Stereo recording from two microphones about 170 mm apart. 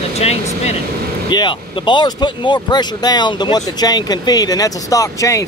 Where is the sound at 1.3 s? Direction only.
25° left (ahead or behind).